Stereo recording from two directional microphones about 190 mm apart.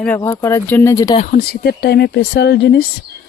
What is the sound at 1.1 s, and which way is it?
Speech, 45° left (ahead or behind).